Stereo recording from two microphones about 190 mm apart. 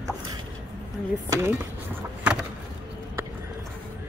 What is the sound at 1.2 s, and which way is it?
Speech, 20° right (ahead or behind).